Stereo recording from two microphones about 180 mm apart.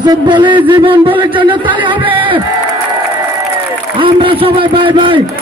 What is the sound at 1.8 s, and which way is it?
Music, 30° right (ahead or behind).